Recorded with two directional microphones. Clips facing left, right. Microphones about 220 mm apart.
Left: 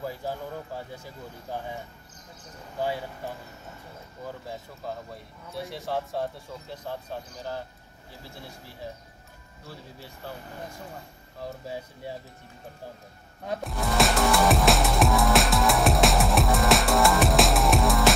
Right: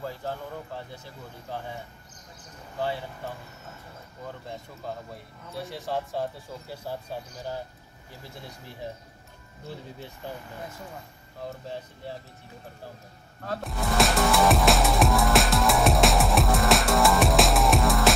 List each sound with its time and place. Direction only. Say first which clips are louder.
0.0 s speech: left 1 dB; 10° left (ahead or behind)
2.8 s speech: left 1 dB; 10° left (ahead or behind)
4.8 s speech: left 1 dB; centre (ahead or behind)
9.7 s speech: right 4 dB; 20° right (ahead or behind)
13.6 s music: even; centre (ahead or behind)